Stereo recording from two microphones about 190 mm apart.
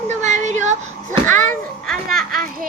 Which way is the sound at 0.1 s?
40° right (ahead or behind).